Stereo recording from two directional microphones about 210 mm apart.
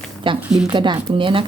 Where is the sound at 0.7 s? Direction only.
20° right (ahead or behind).